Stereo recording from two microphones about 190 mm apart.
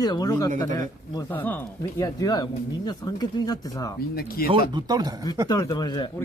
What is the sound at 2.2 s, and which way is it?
Speech, 20° left (ahead or behind).